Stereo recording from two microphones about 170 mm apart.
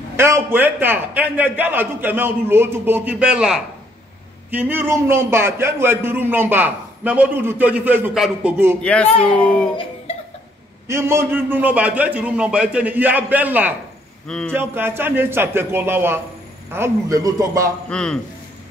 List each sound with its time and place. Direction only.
0.2 s a man's voice: 15° right (ahead or behind)
8.8 s speech: 5° left (ahead or behind)
10.9 s a man's voice: 15° right (ahead or behind)
14.2 s a man's voice: 5° left (ahead or behind)
14.5 s a man's voice: 15° right (ahead or behind)
17.8 s a man's voice: 5° left (ahead or behind)